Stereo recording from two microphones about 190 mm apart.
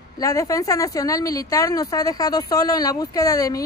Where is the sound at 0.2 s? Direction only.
20° left (ahead or behind).